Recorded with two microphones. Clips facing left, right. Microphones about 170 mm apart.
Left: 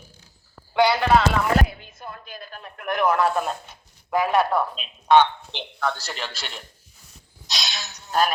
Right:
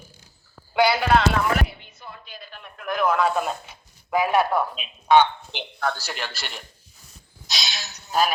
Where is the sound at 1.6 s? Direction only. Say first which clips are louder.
Left 3 dB; 40° left (ahead or behind).